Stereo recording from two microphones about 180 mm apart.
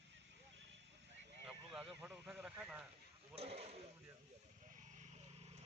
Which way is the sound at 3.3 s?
35° right (ahead or behind).